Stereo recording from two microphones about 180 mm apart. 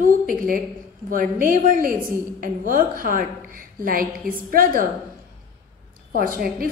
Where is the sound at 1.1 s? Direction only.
50° right (ahead or behind).